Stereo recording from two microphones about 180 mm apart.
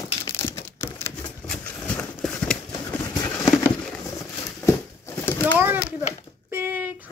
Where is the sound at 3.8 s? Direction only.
15° left (ahead or behind).